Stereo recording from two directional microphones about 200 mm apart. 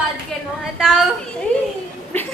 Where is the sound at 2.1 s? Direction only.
10° left (ahead or behind).